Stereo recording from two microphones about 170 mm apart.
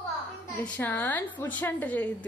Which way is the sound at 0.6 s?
10° left (ahead or behind).